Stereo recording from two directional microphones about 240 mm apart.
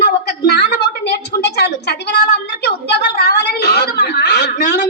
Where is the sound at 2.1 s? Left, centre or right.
Left.